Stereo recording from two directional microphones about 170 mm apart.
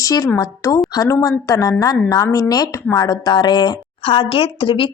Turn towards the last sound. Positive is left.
turn(degrees=30)  # may be behind; listen again after turning